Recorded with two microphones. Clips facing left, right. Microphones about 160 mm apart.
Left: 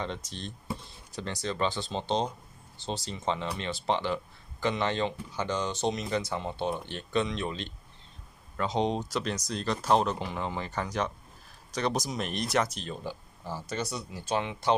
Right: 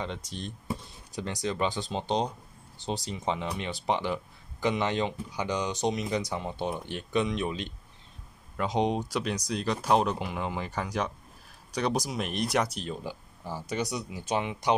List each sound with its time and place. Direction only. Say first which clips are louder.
0.0 s speech: even; 5° right (ahead or behind)